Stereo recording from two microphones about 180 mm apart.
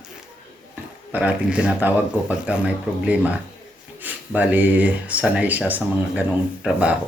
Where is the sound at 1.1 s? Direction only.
5° right (ahead or behind).